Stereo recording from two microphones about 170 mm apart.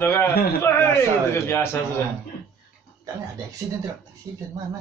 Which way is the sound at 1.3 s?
15° left (ahead or behind).